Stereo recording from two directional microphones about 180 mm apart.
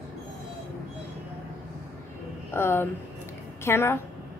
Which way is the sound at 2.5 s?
15° left (ahead or behind).